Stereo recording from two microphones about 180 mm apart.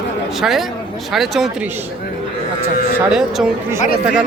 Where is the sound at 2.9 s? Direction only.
5° right (ahead or behind).